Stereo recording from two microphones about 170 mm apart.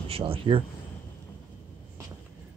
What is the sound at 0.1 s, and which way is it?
Speech, 30° right (ahead or behind).